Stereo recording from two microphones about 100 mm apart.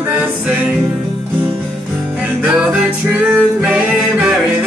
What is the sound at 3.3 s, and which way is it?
Music, 10° right (ahead or behind).